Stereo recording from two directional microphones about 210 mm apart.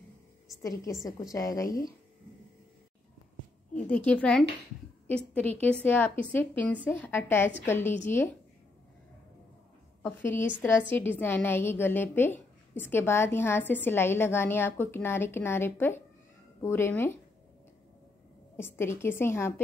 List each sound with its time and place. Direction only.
0.6 s a woman's voice: 15° left (ahead or behind)
3.7 s a woman's voice: 5° left (ahead or behind)
10.0 s a woman's voice: 10° left (ahead or behind)
18.6 s a woman's voice: 10° left (ahead or behind)